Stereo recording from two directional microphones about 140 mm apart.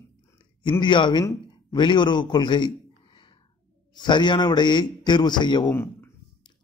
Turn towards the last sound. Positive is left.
turn(degrees=30)  # may be behind; listen again after turning